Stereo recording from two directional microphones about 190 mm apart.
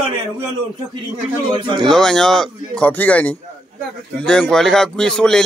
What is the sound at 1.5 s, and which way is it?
Speech, 25° right (ahead or behind).